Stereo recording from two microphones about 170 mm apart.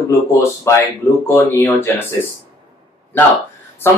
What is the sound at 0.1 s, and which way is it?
Speech, 15° left (ahead or behind).